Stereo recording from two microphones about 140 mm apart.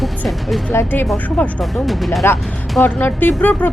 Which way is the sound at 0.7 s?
15° left (ahead or behind).